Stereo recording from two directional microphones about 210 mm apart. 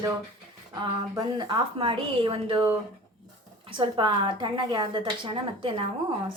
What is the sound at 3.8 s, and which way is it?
A woman's voice, 25° right (ahead or behind).